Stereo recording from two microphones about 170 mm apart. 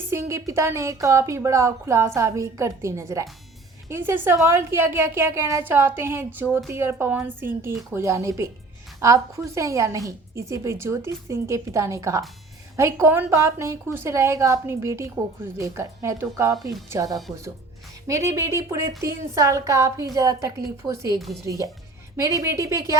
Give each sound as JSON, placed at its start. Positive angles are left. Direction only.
{"t": 0.1, "sound": "a woman's voice", "side_deg": -15}
{"t": 21.2, "sound": "speech", "side_deg": 0}
{"t": 21.4, "sound": "speech", "side_deg": -20}